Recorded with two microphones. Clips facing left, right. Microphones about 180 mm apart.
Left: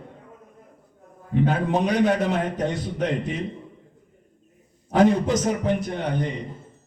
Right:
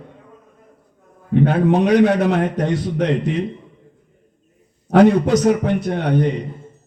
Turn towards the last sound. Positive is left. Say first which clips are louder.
# right 8 dB
turn(degrees=-65)  # may be behind; listen again after turning